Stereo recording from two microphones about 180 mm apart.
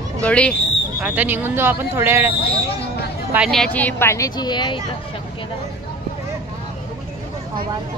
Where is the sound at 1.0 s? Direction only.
10° right (ahead or behind).